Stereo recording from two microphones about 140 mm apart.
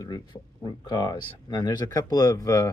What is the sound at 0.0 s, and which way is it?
Speech, 30° left (ahead or behind).